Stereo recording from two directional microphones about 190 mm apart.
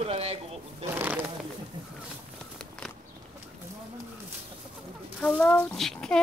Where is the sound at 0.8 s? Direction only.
10° right (ahead or behind).